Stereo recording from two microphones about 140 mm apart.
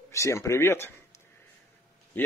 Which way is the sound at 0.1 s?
20° left (ahead or behind).